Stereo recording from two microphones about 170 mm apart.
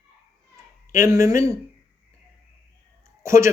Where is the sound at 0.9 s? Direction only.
15° right (ahead or behind).